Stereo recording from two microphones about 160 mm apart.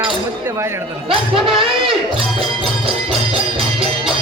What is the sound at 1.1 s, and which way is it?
Speech, 35° right (ahead or behind).